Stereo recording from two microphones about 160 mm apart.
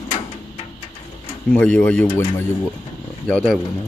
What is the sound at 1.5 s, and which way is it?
Speech, 10° left (ahead or behind).